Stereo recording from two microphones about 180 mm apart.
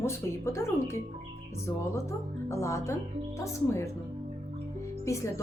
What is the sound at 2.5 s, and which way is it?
Speech, 15° left (ahead or behind).